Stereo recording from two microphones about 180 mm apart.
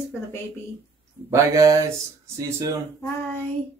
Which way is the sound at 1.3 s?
15° right (ahead or behind).